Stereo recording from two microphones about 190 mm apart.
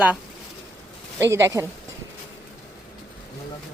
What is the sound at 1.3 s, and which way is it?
Speech, 15° right (ahead or behind).